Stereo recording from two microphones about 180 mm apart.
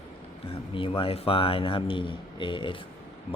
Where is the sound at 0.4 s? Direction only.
30° left (ahead or behind).